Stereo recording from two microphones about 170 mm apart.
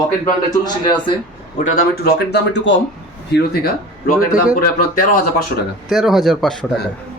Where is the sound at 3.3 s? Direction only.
65° left (ahead or behind).